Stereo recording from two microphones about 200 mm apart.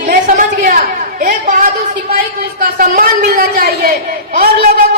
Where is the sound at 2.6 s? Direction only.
45° right (ahead or behind).